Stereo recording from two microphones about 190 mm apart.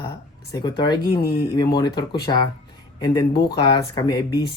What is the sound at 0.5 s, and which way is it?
Speech, 25° left (ahead or behind).